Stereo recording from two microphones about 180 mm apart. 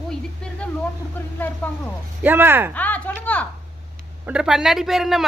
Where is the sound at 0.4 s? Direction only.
5° left (ahead or behind).